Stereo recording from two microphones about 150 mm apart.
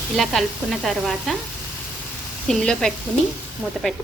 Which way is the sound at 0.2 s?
Centre (ahead or behind).